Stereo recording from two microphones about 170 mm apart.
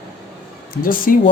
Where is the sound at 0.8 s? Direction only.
55° left (ahead or behind).